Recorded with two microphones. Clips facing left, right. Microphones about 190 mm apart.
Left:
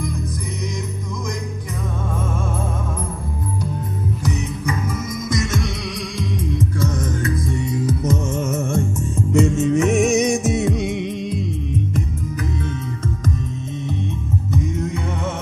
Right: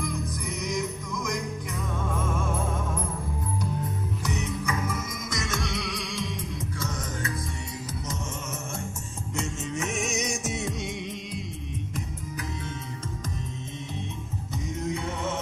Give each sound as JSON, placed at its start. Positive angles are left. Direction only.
{"t": 7.8, "sound": "music", "side_deg": 60}